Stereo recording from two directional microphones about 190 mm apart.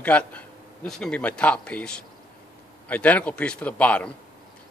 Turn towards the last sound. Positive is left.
turn(degrees=5)  # may be behind; listen again after turning